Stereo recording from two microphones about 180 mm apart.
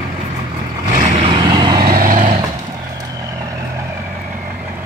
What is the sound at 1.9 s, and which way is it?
Vehicle, 50° right (ahead or behind).